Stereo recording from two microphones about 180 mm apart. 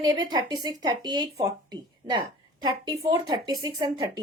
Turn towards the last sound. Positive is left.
turn(degrees=-20)  # may be behind; listen again after turning